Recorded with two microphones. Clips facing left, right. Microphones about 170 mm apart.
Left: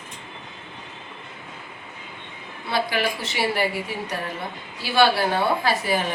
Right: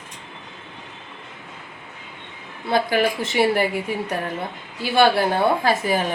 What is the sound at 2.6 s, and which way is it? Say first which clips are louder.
Speech: right 5 dB; 45° right (ahead or behind).